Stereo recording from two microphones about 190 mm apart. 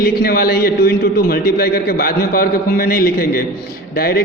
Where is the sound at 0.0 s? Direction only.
50° left (ahead or behind).